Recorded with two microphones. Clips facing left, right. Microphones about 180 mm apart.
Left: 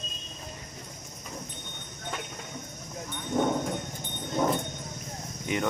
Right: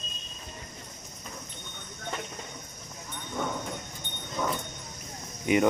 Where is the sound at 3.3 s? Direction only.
30° left (ahead or behind).